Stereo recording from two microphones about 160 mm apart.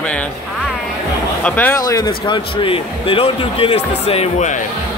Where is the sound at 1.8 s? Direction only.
25° left (ahead or behind); by 4.6 s 45° left (ahead or behind).